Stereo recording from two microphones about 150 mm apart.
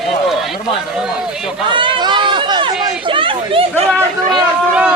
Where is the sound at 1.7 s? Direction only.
35° right (ahead or behind).